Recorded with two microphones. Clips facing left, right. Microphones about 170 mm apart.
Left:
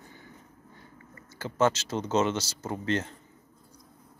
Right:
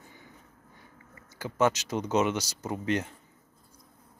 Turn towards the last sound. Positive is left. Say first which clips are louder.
# even
turn(degrees=-15)  # may be behind; listen again after turning